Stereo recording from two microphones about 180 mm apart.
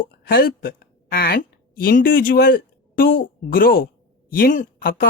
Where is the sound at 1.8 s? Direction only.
50° left (ahead or behind).